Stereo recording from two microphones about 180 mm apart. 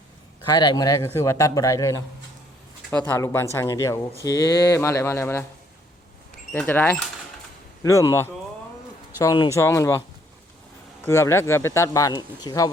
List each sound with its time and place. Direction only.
0.4 s speech: 25° left (ahead or behind)
6.5 s speech: 10° left (ahead or behind)
11.0 s speech: 15° left (ahead or behind)